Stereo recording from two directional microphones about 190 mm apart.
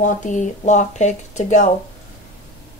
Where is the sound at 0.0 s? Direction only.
40° left (ahead or behind).